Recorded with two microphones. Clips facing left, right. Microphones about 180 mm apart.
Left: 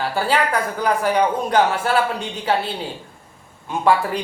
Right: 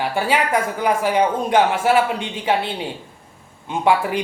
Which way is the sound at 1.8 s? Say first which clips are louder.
Right 3 dB; 10° right (ahead or behind).